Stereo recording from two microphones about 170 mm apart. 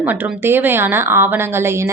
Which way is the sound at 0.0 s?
10° right (ahead or behind).